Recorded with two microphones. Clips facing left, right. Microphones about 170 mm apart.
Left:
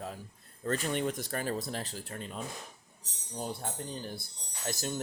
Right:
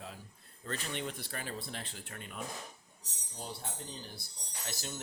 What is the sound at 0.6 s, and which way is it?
Speech, 45° left (ahead or behind).